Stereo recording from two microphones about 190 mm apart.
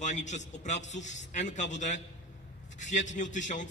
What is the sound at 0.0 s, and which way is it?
A man's voice, 40° left (ahead or behind).